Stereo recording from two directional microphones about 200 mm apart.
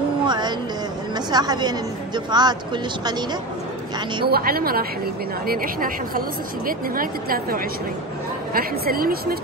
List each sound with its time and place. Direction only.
0.2 s a sound: 20° right (ahead or behind)
1.1 s a woman's voice: 20° right (ahead or behind)
4.3 s speech: 50° right (ahead or behind)